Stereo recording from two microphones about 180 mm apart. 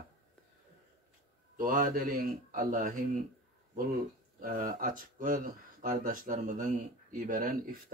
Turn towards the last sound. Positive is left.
turn(degrees=-50)  # may be behind; listen again after turning